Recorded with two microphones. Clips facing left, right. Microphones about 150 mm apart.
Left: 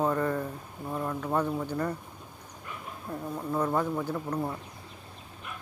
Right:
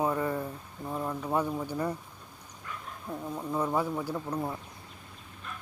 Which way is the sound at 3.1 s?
10° right (ahead or behind).